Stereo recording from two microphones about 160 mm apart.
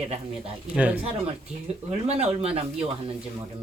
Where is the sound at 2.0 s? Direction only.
40° right (ahead or behind).